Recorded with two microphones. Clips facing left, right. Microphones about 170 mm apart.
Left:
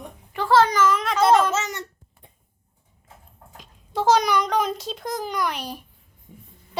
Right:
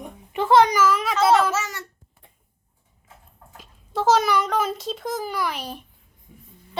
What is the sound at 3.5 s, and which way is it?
A child's voice, centre (ahead or behind).